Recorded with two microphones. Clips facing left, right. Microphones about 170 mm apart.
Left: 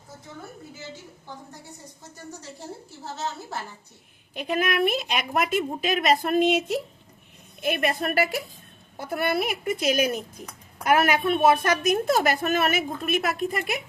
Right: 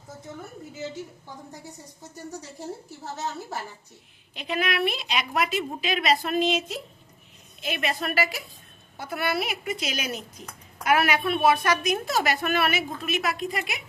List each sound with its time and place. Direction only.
4.4 s a woman's voice: 45° left (ahead or behind)